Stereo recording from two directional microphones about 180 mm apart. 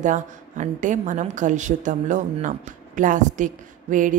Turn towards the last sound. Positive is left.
turn(degrees=-45)  # may be behind; listen again after turning